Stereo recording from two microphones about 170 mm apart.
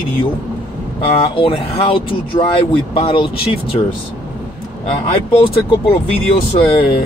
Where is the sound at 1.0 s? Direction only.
35° left (ahead or behind).